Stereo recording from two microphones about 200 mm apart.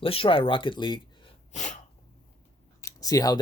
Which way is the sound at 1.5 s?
35° left (ahead or behind).